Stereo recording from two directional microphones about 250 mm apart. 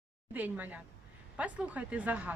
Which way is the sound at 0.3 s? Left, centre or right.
Centre.